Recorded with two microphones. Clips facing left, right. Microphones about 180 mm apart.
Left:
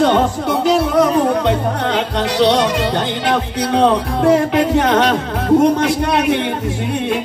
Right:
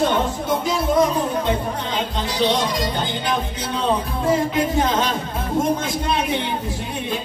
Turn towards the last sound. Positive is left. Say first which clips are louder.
# left 7 dB
turn(degrees=70)  # may be behind; listen again after turning